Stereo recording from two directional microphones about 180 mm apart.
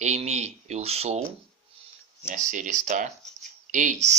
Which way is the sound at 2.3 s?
45° right (ahead or behind).